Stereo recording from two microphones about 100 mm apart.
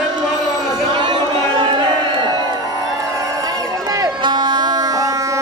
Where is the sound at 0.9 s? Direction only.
50° right (ahead or behind).